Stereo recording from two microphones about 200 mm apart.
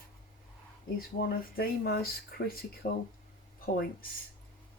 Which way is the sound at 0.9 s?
50° left (ahead or behind).